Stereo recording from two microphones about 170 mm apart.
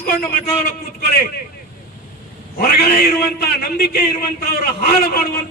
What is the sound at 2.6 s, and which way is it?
A man's voice, 65° left (ahead or behind).